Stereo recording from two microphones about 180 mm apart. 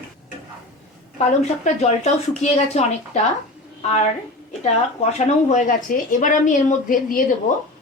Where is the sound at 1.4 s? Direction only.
40° left (ahead or behind).